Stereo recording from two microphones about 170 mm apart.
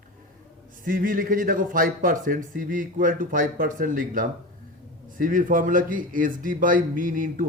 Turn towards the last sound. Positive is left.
turn(degrees=-55)  # may be behind; listen again after turning